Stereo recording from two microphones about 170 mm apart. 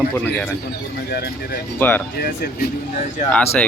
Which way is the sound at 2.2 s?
65° left (ahead or behind).